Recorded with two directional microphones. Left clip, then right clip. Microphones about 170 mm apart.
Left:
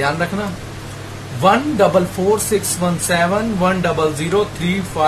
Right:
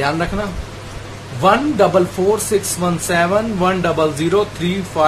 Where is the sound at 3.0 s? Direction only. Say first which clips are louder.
Right 1 dB; 20° right (ahead or behind).